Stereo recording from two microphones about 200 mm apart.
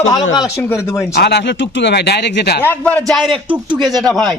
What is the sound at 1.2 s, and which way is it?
A man's voice, 55° left (ahead or behind).